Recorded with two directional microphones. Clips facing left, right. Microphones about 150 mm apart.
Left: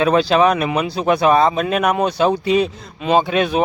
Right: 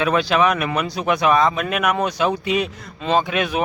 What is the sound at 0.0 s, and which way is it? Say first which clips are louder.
Speech: left 4 dB; 30° left (ahead or behind).